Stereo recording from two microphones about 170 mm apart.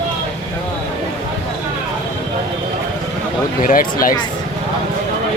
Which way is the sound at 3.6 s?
55° left (ahead or behind).